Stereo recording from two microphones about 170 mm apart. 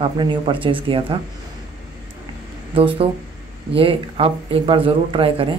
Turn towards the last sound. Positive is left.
turn(degrees=-30)  # may be behind; listen again after turning